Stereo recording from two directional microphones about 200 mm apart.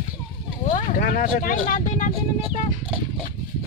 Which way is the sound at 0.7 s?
45° left (ahead or behind).